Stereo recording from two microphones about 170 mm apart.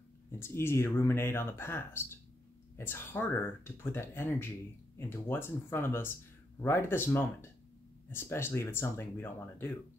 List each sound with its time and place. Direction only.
0.3 s speech: 15° left (ahead or behind)